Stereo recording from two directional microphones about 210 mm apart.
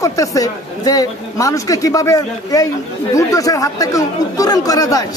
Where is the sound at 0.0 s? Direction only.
15° left (ahead or behind).